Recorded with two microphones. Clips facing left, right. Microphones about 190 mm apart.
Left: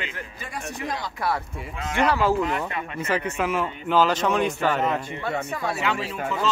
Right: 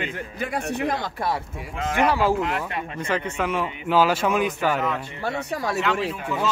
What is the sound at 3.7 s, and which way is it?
Speech, 10° right (ahead or behind).